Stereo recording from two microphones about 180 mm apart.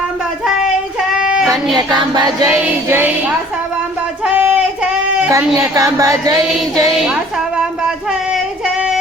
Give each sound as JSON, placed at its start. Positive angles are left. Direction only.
{"t": 1.1, "sound": "a sound", "side_deg": -5}
{"t": 1.5, "sound": "music", "side_deg": -25}
{"t": 2.5, "sound": "music", "side_deg": -10}
{"t": 4.4, "sound": "child singing", "side_deg": -10}
{"t": 5.5, "sound": "music", "side_deg": -20}